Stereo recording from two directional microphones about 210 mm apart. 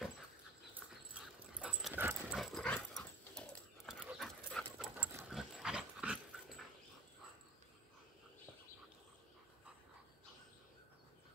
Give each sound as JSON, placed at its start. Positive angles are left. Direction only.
{"t": 0.7, "sound": "dog", "side_deg": -5}